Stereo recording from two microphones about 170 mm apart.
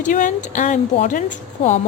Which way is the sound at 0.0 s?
50° left (ahead or behind).